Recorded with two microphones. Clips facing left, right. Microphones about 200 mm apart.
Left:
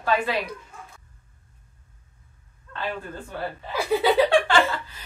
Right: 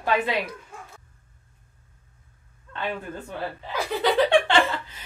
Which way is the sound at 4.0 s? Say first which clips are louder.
Left 1 dB; 10° left (ahead or behind).